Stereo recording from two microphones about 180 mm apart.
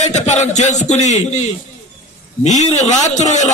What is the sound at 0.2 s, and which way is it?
Speech, 40° left (ahead or behind).